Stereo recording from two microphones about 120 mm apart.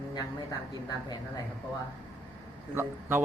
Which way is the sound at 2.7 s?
15° right (ahead or behind).